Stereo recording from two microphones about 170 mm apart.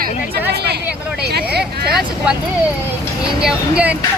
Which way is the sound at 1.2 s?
70° right (ahead or behind).